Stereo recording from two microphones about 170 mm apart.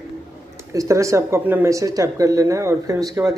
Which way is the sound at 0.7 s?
20° right (ahead or behind).